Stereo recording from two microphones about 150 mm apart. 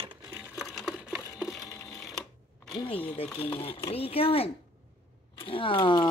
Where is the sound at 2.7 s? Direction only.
35° left (ahead or behind).